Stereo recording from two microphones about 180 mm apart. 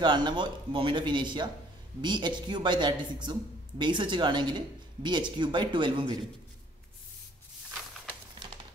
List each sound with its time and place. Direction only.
0.0 s speech: 25° right (ahead or behind)